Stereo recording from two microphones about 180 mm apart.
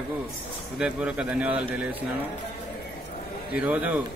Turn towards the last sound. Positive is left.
turn(degrees=-10)  # may be behind; listen again after turning